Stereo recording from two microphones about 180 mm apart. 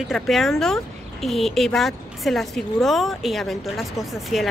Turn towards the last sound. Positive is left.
turn(degrees=0)  # may be behind; listen again after turning